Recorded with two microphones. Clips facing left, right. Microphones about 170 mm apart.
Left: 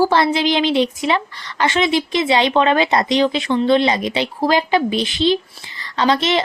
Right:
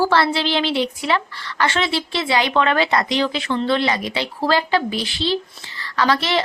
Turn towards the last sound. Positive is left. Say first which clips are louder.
# left 2 dB
turn(degrees=20)  # may be behind; listen again after turning